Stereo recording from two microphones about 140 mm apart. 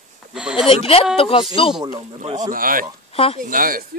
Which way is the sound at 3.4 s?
80° right.